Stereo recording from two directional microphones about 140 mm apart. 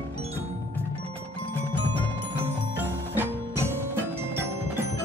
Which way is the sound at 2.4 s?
15° right (ahead or behind).